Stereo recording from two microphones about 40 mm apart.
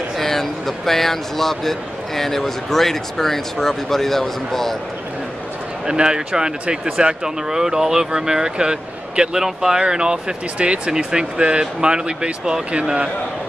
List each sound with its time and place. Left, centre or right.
0.2 s speech: centre
5.9 s speech: right